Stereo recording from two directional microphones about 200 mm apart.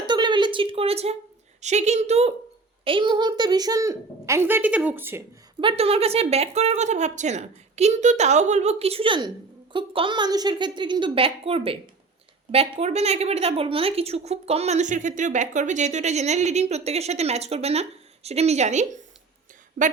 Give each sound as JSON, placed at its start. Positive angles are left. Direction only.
{"t": 0.0, "sound": "a sound", "side_deg": -25}
{"t": 1.6, "sound": "a woman's voice", "side_deg": -35}
{"t": 5.5, "sound": "a woman's voice", "side_deg": -25}